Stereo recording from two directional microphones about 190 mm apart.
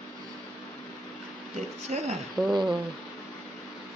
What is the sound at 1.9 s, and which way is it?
Speech, 35° right (ahead or behind).